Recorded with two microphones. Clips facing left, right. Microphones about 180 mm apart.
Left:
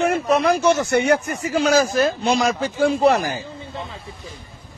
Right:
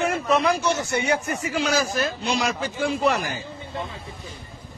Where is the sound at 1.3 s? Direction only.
35° left (ahead or behind).